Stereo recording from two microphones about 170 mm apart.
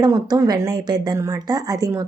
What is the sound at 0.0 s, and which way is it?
Speech, 20° right (ahead or behind).